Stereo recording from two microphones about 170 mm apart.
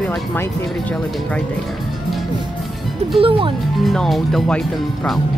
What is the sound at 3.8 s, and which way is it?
Speech, centre (ahead or behind).